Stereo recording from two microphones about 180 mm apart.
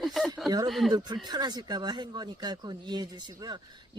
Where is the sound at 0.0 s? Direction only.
Centre (ahead or behind).